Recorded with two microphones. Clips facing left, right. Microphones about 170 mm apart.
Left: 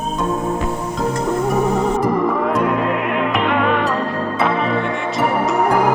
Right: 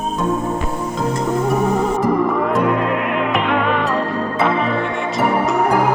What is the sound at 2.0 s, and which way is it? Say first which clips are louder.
Music: right 1 dB; centre (ahead or behind).